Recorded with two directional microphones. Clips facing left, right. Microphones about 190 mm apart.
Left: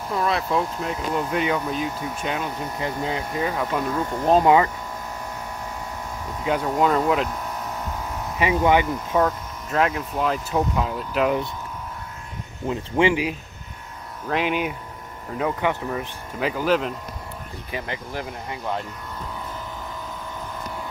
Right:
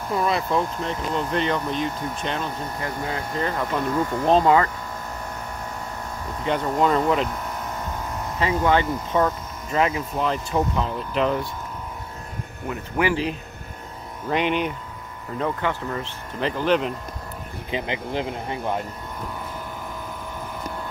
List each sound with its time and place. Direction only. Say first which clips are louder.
0.1 s speech: right 1 dB; centre (ahead or behind)
6.4 s speech: even; 5° left (ahead or behind)
8.4 s speech: left 2 dB; 15° left (ahead or behind)
9.1 s speech: left 1 dB; centre (ahead or behind)
12.6 s speech: left 4 dB; 25° left (ahead or behind)
13.1 s speech: even; 10° left (ahead or behind)
17.6 s speech: right 4 dB; 20° right (ahead or behind)